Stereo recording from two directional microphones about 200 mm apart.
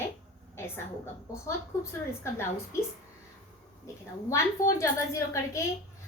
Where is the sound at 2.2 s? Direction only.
15° left (ahead or behind).